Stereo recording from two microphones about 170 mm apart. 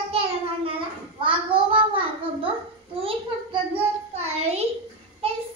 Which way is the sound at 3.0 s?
35° right (ahead or behind).